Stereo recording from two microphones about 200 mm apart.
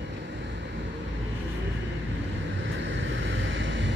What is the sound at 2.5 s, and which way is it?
Vehicle, 70° right (ahead or behind).